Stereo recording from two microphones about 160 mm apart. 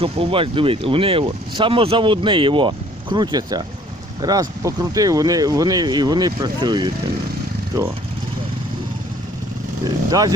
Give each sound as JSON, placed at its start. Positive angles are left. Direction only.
{"t": 0.0, "sound": "speech", "side_deg": -35}
{"t": 10.1, "sound": "speech", "side_deg": -25}